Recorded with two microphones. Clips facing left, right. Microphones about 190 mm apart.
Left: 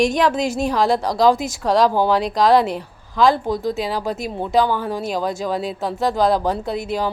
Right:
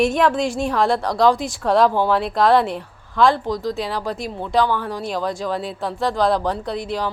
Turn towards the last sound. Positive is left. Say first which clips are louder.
# left 1 dB
turn(degrees=5)  # may be behind; listen again after turning